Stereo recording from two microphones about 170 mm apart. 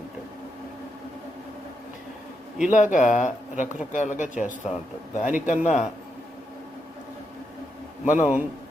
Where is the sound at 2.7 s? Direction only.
45° left (ahead or behind).